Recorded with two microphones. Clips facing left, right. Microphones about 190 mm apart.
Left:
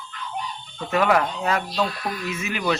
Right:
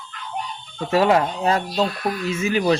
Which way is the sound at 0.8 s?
25° right (ahead or behind).